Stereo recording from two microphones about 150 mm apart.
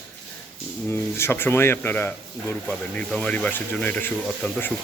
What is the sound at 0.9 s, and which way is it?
Speech, 15° left (ahead or behind).